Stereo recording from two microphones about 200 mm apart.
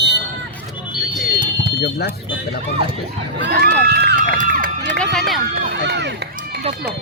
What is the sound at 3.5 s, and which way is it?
Speech, 50° right (ahead or behind).